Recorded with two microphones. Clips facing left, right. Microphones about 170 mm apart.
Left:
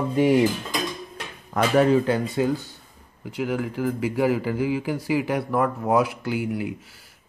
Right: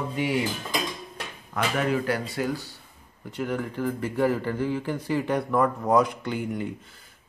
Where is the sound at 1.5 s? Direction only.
35° left (ahead or behind).